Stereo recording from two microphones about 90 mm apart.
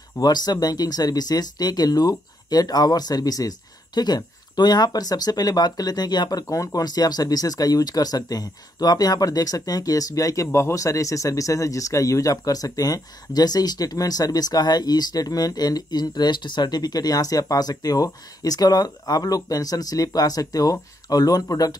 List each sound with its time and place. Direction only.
0.2 s speech: 50° left (ahead or behind)